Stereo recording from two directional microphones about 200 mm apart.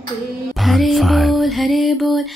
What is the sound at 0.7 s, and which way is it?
Music, centre (ahead or behind).